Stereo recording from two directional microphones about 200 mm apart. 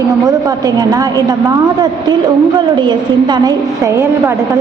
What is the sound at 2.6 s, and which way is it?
A woman's voice, 20° right (ahead or behind).